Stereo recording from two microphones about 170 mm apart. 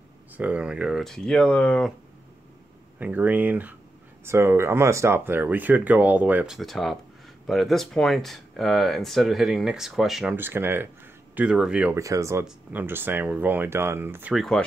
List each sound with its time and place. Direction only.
0.4 s speech: 5° right (ahead or behind)
3.0 s speech: 10° right (ahead or behind)
11.9 s speech: 20° right (ahead or behind)
14.3 s speech: centre (ahead or behind)